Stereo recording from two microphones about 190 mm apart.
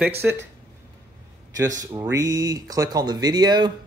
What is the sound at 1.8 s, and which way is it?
Speech, 20° right (ahead or behind).